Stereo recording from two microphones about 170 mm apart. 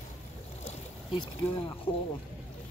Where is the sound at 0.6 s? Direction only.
30° left (ahead or behind).